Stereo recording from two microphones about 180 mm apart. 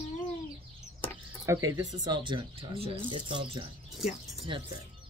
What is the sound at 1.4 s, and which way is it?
Speech, 20° right (ahead or behind).